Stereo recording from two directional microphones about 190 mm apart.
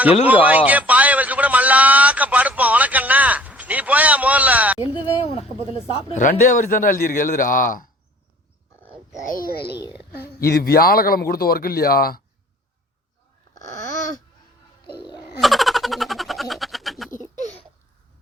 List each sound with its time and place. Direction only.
0.3 s a man's voice: 10° right (ahead or behind)
4.8 s speech: 30° left (ahead or behind)
6.1 s speech: 40° left (ahead or behind)
9.2 s speech: 50° left (ahead or behind)
15.4 s a sound: centre (ahead or behind)
17.1 s a sound: 40° left (ahead or behind)